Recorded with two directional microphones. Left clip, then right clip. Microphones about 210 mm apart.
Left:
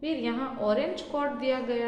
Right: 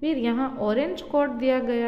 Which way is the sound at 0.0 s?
55° right (ahead or behind).